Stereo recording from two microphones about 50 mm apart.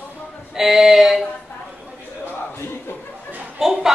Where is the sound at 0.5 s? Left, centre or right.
Centre.